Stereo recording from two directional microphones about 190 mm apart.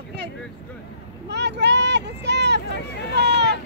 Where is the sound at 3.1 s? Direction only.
65° right (ahead or behind).